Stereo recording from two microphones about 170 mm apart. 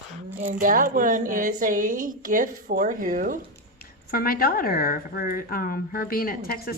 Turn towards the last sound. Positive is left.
turn(degrees=60)  # may be behind; listen again after turning